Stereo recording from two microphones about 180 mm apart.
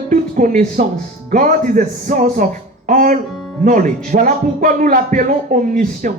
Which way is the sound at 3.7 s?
45° right (ahead or behind).